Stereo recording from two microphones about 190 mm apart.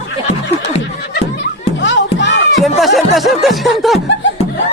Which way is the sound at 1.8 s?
70° left (ahead or behind).